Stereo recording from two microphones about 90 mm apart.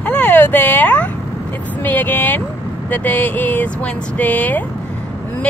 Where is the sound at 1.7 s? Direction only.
20° left (ahead or behind).